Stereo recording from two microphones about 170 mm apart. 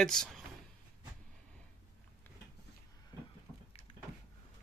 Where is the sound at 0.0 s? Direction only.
5° left (ahead or behind).